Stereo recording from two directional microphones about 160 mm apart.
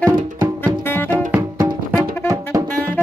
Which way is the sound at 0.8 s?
15° left (ahead or behind).